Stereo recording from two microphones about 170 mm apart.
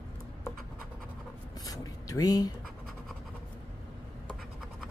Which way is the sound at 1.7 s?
20° left (ahead or behind).